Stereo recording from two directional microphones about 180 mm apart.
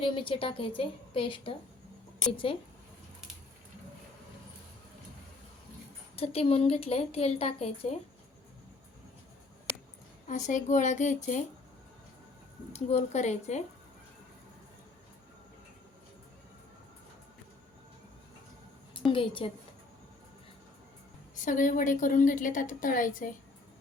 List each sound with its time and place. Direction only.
0.0 s a woman's voice: 30° left (ahead or behind)
6.1 s speech: 35° left (ahead or behind)
10.2 s a woman's voice: 45° left (ahead or behind)
12.7 s speech: 35° left (ahead or behind)
19.1 s a woman's voice: 30° left (ahead or behind)
21.3 s a woman's voice: 45° left (ahead or behind)